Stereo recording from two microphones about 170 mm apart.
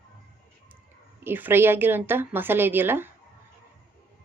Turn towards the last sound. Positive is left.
turn(degrees=-15)  # may be behind; listen again after turning